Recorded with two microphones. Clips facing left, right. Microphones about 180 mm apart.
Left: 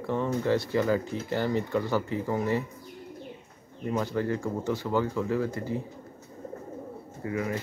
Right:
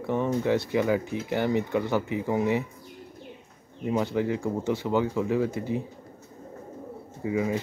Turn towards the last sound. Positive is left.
turn(degrees=-15)  # may be behind; listen again after turning